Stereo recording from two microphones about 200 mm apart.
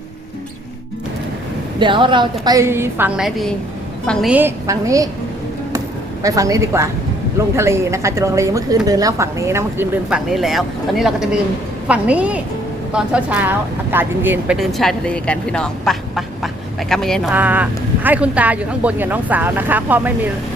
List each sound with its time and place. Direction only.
1.8 s a woman's voice: 25° right (ahead or behind); by 4.3 s 5° left (ahead or behind)
4.3 s speech: 10° right (ahead or behind)
6.2 s speech: 15° right (ahead or behind); by 17.2 s centre (ahead or behind)
17.3 s speech: 10° right (ahead or behind)